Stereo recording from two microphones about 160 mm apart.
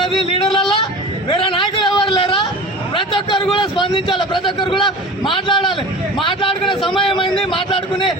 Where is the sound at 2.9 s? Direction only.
30° left (ahead or behind).